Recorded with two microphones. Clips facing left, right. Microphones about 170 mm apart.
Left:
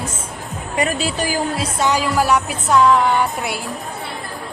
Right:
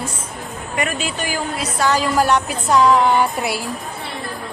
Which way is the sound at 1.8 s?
15° left (ahead or behind).